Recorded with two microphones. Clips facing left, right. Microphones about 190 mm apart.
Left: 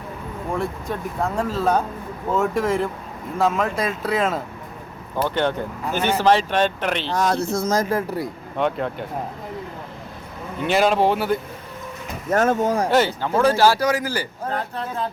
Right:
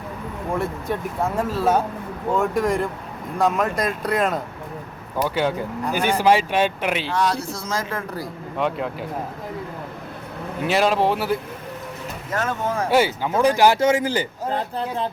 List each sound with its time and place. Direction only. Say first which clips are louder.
0.6 s speech: right 1 dB; 5° right (ahead or behind)
7.1 s speech: left 2 dB; 45° left (ahead or behind)
8.5 s speech: left 1 dB; centre (ahead or behind)
10.6 s speech: left 1 dB; centre (ahead or behind)
12.3 s speech: left 6 dB; 45° left (ahead or behind)
12.9 s speech: even; 10° right (ahead or behind); by 15.1 s 30° right (ahead or behind)